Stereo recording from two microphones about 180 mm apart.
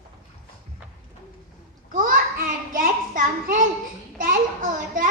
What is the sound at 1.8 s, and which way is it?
A child's voice, 50° right (ahead or behind).